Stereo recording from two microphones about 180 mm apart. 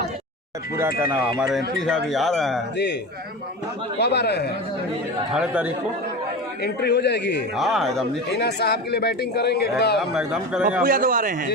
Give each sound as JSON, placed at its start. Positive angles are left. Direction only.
{"t": 0.8, "sound": "speech", "side_deg": -15}
{"t": 1.8, "sound": "a man's voice", "side_deg": 0}
{"t": 3.9, "sound": "a man's voice", "side_deg": 70}
{"t": 5.3, "sound": "a man's voice", "side_deg": -5}
{"t": 6.6, "sound": "a man's voice", "side_deg": 65}
{"t": 7.5, "sound": "a man's voice", "side_deg": 0}
{"t": 8.3, "sound": "speech", "side_deg": 65}
{"t": 10.0, "sound": "a man's voice", "side_deg": -5}
{"t": 10.8, "sound": "a man's voice", "side_deg": -50}